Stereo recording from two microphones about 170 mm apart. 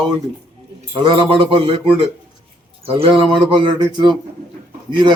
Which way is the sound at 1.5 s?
35° right (ahead or behind).